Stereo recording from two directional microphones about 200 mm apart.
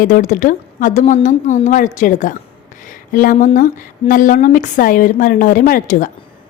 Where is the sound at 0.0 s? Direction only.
40° left (ahead or behind).